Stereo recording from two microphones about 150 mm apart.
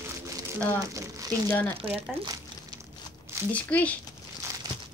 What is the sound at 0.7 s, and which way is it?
Crumpling, 25° right (ahead or behind).